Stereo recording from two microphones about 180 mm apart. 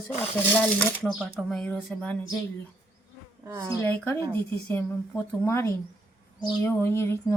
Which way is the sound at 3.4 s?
20° right (ahead or behind).